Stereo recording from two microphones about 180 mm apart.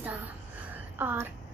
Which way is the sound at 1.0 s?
10° right (ahead or behind).